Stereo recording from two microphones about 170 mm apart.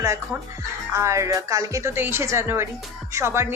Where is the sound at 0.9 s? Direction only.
15° right (ahead or behind).